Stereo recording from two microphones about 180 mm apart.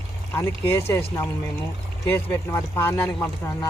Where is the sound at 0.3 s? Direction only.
15° left (ahead or behind).